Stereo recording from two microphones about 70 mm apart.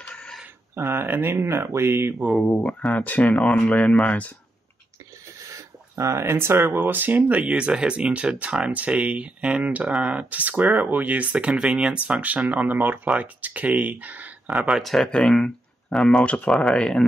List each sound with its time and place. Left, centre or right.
0.7 s speech: right
2.4 s speech: left
5.4 s speech: right
14.7 s speech: centre
16.3 s speech: centre